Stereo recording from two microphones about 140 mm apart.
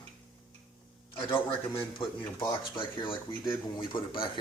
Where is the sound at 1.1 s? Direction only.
35° left (ahead or behind).